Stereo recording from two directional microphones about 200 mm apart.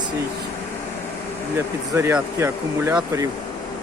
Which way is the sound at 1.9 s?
15° right (ahead or behind).